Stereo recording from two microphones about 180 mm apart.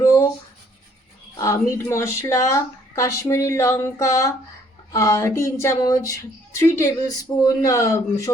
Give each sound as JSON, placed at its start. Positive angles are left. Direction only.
{"t": 0.0, "sound": "writing", "side_deg": 15}
{"t": 1.4, "sound": "speech", "side_deg": 15}